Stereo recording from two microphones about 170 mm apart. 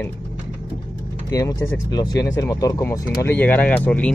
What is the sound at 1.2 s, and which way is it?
Speech, 20° left (ahead or behind).